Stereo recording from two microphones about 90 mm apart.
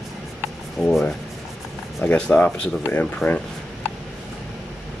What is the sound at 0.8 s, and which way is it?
Speech, 5° left (ahead or behind).